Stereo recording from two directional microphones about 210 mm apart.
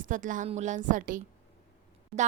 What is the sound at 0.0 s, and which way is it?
A woman's voice, 40° right (ahead or behind).